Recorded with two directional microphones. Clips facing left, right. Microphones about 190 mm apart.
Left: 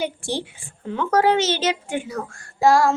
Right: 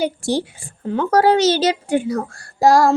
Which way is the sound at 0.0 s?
40° right (ahead or behind).